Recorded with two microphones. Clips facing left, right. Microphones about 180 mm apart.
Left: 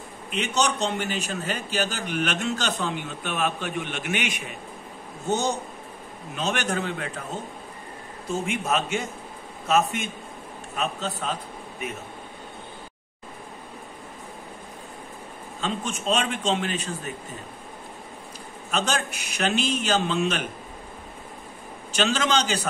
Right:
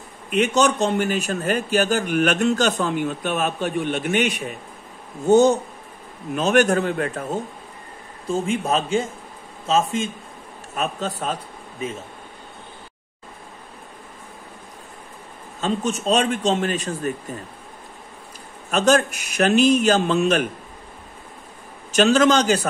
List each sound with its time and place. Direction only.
0.3 s speech: 50° right (ahead or behind)
6.3 s speech: 50° right (ahead or behind)
8.3 s a man's voice: 30° right (ahead or behind)
10.8 s speech: 45° right (ahead or behind)
15.6 s a man's voice: 40° right (ahead or behind)
18.7 s speech: 50° right (ahead or behind)
21.9 s speech: 45° right (ahead or behind)